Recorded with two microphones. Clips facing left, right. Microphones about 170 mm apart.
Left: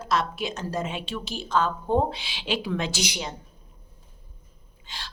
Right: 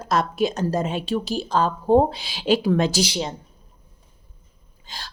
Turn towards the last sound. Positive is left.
turn(degrees=-30)  # may be behind; listen again after turning